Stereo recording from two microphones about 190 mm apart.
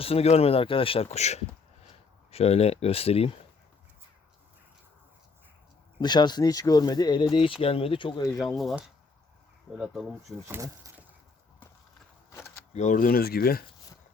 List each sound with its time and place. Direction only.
0.0 s speech: 30° left (ahead or behind)
6.0 s speech: 20° left (ahead or behind)
8.4 s speech: centre (ahead or behind)
10.6 s a sound: 15° right (ahead or behind)
12.7 s speech: 40° left (ahead or behind)